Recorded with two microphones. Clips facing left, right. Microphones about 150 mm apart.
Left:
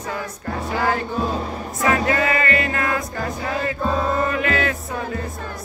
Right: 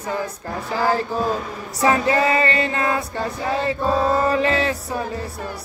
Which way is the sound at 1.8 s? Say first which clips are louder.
Right 2 dB; 25° right (ahead or behind).